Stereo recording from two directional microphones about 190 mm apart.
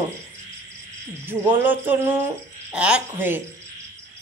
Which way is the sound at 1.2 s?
10° right (ahead or behind).